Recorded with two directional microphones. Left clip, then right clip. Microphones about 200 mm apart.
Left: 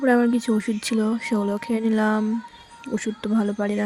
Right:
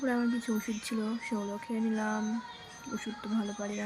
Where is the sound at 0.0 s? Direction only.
40° left (ahead or behind).